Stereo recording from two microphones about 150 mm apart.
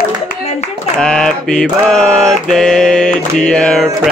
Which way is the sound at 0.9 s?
5° left (ahead or behind).